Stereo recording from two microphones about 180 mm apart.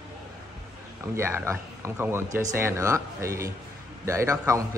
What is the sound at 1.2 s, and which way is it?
Speech, 15° right (ahead or behind).